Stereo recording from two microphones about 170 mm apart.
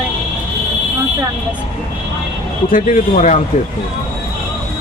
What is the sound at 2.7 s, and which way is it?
Speech, 50° left (ahead or behind).